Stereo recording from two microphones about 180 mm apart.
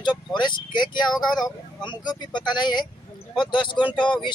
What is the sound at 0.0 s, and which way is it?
Vehicle, 25° left (ahead or behind).